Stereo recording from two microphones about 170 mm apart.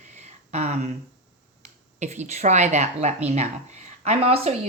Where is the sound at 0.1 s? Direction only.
40° right (ahead or behind).